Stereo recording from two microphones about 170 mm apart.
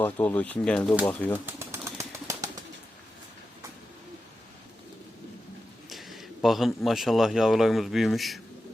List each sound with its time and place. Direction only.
0.0 s speech: 10° left (ahead or behind)
1.5 s bird: 15° right (ahead or behind)
5.9 s speech: centre (ahead or behind)